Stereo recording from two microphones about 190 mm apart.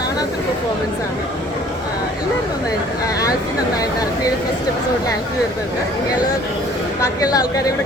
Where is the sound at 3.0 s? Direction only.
20° left (ahead or behind).